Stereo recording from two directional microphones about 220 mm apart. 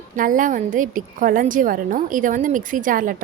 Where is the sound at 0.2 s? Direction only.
35° right (ahead or behind).